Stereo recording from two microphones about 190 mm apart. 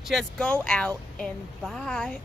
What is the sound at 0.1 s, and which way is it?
Speech, 5° left (ahead or behind).